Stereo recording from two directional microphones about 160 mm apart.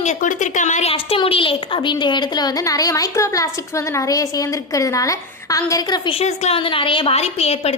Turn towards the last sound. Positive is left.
turn(degrees=40)  # may be behind; listen again after turning